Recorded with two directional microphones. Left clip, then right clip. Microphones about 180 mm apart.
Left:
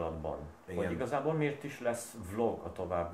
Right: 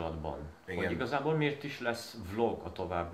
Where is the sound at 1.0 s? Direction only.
5° left (ahead or behind).